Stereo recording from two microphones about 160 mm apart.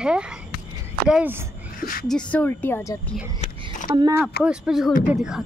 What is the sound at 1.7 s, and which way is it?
Speech, 65° left (ahead or behind).